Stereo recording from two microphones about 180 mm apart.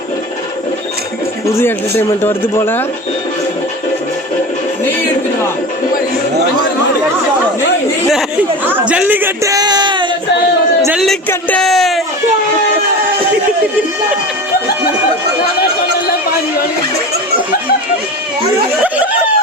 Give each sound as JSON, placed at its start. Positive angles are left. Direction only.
{"t": 1.5, "sound": "speech", "side_deg": 15}
{"t": 8.1, "sound": "speech", "side_deg": -10}
{"t": 8.9, "sound": "a sound", "side_deg": -10}
{"t": 10.9, "sound": "speech", "side_deg": 0}